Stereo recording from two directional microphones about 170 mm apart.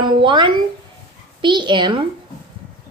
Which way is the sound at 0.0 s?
25° right (ahead or behind).